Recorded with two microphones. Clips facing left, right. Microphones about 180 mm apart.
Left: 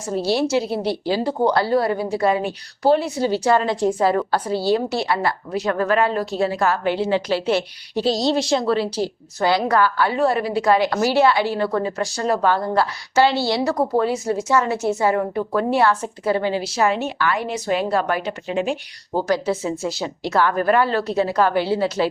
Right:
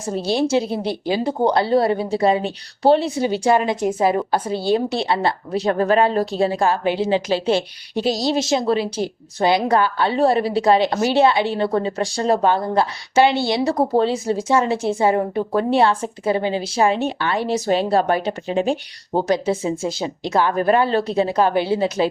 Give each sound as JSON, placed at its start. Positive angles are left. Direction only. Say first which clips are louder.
{"t": 0.5, "sound": "a woman's voice", "louder": "right 1 dB", "side_deg": -20}
{"t": 3.2, "sound": "a woman's voice", "louder": "right 1 dB", "side_deg": -15}